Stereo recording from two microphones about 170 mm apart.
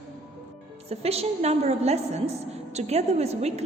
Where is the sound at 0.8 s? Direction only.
35° right (ahead or behind).